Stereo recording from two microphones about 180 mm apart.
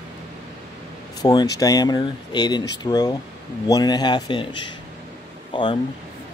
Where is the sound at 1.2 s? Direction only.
20° left (ahead or behind).